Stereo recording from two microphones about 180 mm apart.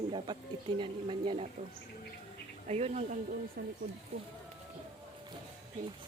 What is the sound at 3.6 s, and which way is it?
Speech, 60° right (ahead or behind).